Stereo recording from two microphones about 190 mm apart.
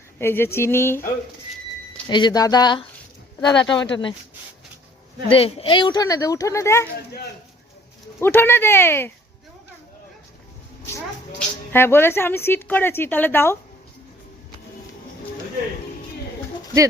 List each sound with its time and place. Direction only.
0.2 s speech: 10° left (ahead or behind)
2.0 s speech: 25° left (ahead or behind)
5.3 s speech: 30° left (ahead or behind); by 6.8 s 15° left (ahead or behind)
8.2 s speech: 10° left (ahead or behind)
11.3 s speech: 10° left (ahead or behind)